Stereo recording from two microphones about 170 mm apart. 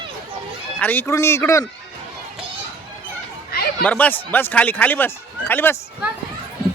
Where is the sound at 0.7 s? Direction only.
10° left (ahead or behind).